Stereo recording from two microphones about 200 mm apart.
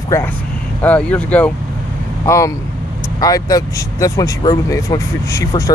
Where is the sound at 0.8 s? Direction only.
5° left (ahead or behind).